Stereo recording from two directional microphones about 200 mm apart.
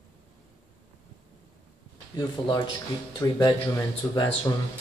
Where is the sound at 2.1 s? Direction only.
20° left (ahead or behind).